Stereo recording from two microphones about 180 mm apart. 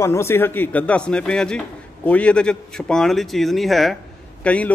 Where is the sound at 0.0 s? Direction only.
15° left (ahead or behind).